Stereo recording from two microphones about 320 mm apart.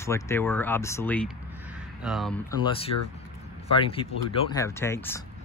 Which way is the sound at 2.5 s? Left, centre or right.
Centre.